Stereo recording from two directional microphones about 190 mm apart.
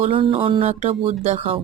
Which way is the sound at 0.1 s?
30° right (ahead or behind).